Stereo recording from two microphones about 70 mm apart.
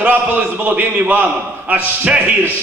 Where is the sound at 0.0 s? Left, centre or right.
Right.